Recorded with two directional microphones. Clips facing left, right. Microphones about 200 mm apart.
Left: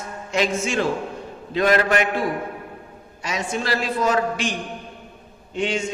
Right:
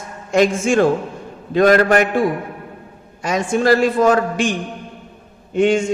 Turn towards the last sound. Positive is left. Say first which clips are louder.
# right 9 dB
turn(degrees=-50)  # may be behind; listen again after turning